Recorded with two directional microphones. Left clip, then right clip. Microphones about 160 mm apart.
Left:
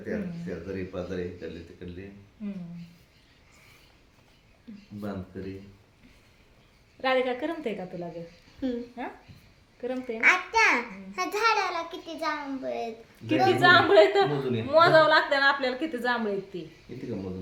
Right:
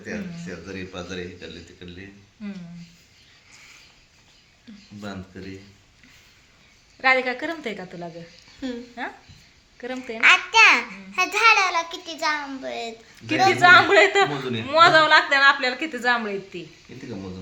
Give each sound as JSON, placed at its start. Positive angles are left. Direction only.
{"t": 0.0, "sound": "speech", "side_deg": 20}
{"t": 4.9, "sound": "speech", "side_deg": 15}
{"t": 7.0, "sound": "speech", "side_deg": -15}
{"t": 10.2, "sound": "a child's voice", "side_deg": 0}
{"t": 13.2, "sound": "a woman's voice", "side_deg": -20}
{"t": 16.9, "sound": "speech", "side_deg": 10}